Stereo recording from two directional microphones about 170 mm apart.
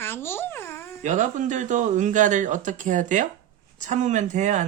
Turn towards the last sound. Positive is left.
turn(degrees=-45)  # may be behind; listen again after turning